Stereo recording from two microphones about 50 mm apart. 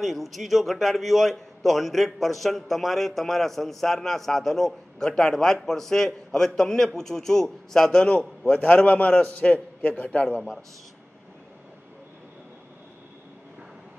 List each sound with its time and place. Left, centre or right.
0.0 s a man's voice: centre; by 10.4 s left